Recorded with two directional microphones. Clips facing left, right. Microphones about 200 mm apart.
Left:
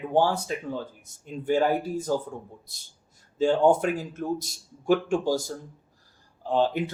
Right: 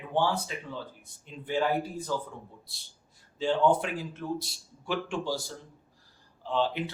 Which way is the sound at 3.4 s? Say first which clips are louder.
Left 5 dB; 45° left (ahead or behind).